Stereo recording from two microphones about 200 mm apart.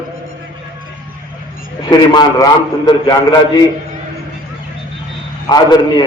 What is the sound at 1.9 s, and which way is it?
A man's voice, 20° left (ahead or behind).